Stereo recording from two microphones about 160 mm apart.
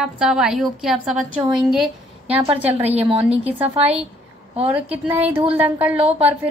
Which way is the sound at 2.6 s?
40° right (ahead or behind).